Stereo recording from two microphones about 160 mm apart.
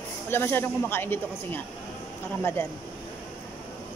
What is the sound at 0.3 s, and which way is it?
A woman's voice, 15° left (ahead or behind).